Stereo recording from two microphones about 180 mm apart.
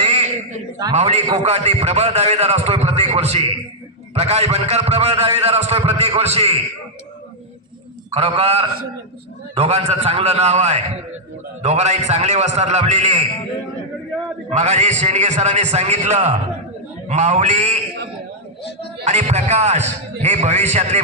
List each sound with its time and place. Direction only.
0.0 s a sound: 40° right (ahead or behind)
0.9 s a man's voice: 35° right (ahead or behind)
8.1 s a man's voice: 35° right (ahead or behind)
14.5 s a man's voice: 40° right (ahead or behind)
19.0 s a man's voice: 40° right (ahead or behind)